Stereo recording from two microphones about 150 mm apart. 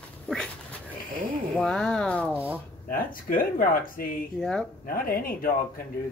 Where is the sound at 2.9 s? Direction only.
70° left (ahead or behind).